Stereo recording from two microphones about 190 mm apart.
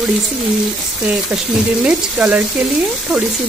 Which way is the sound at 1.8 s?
5° right (ahead or behind).